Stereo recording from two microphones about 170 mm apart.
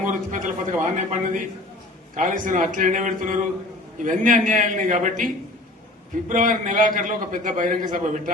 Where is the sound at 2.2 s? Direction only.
50° right (ahead or behind).